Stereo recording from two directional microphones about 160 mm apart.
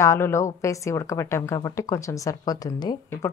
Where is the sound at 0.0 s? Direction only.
20° left (ahead or behind).